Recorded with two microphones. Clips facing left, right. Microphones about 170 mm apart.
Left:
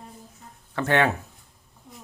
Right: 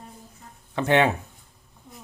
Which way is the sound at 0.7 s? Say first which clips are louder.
Right 2 dB; 20° right (ahead or behind).